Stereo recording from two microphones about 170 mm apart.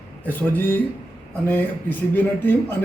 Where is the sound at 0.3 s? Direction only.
10° left (ahead or behind).